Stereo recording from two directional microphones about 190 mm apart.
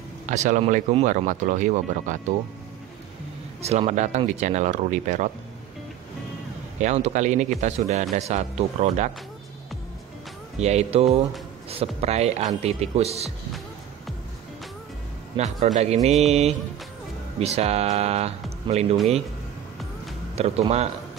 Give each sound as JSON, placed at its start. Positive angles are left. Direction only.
{"t": 0.3, "sound": "speech", "side_deg": -40}
{"t": 3.6, "sound": "speech", "side_deg": -35}
{"t": 6.8, "sound": "speech", "side_deg": -35}
{"t": 10.6, "sound": "speech", "side_deg": -35}
{"t": 15.3, "sound": "speech", "side_deg": -35}
{"t": 20.3, "sound": "speech", "side_deg": -35}